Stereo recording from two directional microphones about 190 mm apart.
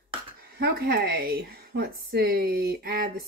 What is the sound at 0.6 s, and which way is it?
A woman's voice, 55° right (ahead or behind).